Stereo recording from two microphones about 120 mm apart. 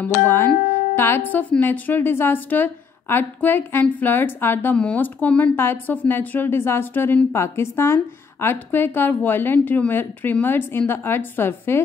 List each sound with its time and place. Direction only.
0.6 s music: 90° left
0.9 s a woman's voice: 20° left (ahead or behind)